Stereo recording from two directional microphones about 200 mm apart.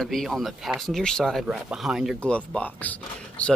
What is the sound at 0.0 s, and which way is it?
Speech, centre (ahead or behind).